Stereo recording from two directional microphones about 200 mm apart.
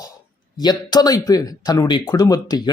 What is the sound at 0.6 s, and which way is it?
Speech, 20° left (ahead or behind).